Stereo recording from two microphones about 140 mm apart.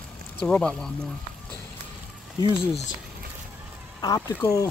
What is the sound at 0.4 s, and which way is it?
Speech, 10° left (ahead or behind).